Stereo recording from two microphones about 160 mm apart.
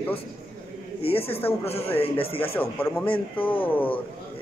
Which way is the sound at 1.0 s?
35° left (ahead or behind).